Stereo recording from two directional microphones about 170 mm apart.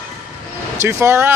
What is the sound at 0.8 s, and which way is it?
Speech, 15° right (ahead or behind).